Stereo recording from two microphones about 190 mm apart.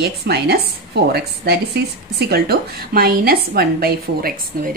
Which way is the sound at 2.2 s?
55° right (ahead or behind).